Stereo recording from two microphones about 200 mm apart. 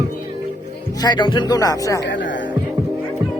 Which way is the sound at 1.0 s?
20° left (ahead or behind).